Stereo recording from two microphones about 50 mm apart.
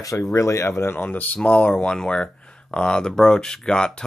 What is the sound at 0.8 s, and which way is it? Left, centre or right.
Speech, left.